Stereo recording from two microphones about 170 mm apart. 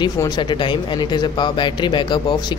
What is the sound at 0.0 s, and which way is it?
Speech, 25° left (ahead or behind).